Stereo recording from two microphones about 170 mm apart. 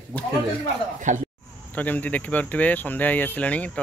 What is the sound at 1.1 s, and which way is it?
Speech, 45° right (ahead or behind).